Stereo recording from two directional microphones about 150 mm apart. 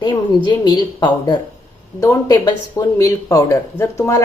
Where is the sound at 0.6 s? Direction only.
30° left (ahead or behind).